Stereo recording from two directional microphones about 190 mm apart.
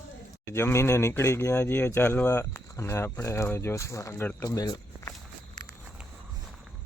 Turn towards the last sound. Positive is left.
turn(degrees=20)  # may be behind; listen again after turning